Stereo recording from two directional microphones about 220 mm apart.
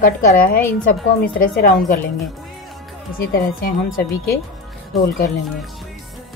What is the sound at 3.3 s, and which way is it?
Speech, 40° left (ahead or behind).